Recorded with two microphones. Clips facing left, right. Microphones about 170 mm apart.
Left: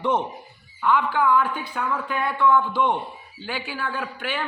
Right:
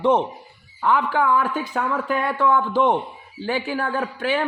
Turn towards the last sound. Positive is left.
turn(degrees=-40)  # may be behind; listen again after turning